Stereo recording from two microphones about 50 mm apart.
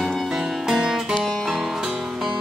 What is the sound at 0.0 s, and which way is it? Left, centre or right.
Music, centre.